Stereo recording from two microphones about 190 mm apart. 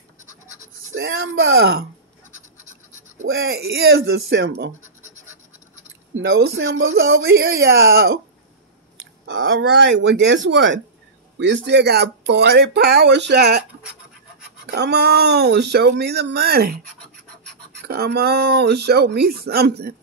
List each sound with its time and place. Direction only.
0.9 s speech: 90° right
2.3 s scratch: 40° right (ahead or behind)
3.4 s speech: 55° right (ahead or behind)
6.2 s speech: 60° right (ahead or behind); by 7.2 s 90° right
7.7 s speech: 55° right (ahead or behind)
9.2 s speech: 90° right; by 13.7 s 60° right (ahead or behind)
14.7 s speech: 60° right (ahead or behind)
17.8 s speech: 55° right (ahead or behind)